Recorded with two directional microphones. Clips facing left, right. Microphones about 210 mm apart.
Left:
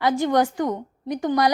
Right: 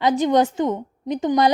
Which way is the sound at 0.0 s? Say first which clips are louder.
Right 2 dB; 20° right (ahead or behind).